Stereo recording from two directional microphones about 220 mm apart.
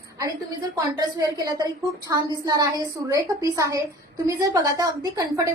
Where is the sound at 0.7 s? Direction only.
15° right (ahead or behind).